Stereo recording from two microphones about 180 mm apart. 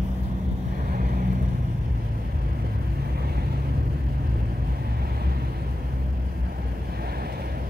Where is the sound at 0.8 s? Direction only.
50° right (ahead or behind).